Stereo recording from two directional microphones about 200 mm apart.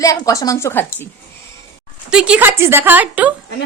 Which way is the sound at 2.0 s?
5° right (ahead or behind).